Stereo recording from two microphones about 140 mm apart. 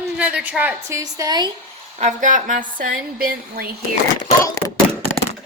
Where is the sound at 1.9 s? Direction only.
60° right (ahead or behind); by 3.3 s 85° right.